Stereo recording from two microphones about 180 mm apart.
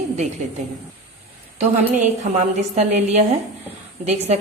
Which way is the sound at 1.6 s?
40° right (ahead or behind).